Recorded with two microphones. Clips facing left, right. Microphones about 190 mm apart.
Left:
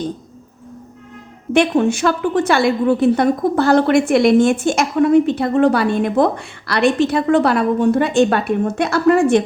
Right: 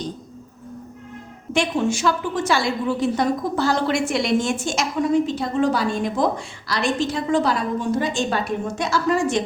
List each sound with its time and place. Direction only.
1.5 s a woman's voice: 60° left (ahead or behind)